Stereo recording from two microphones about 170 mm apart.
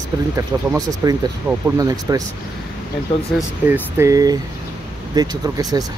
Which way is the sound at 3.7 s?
15° right (ahead or behind).